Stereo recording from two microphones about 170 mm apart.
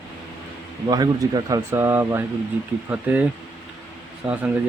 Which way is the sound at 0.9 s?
20° right (ahead or behind).